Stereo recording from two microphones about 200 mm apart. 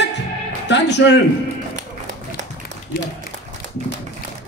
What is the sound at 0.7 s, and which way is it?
Music, 60° left (ahead or behind).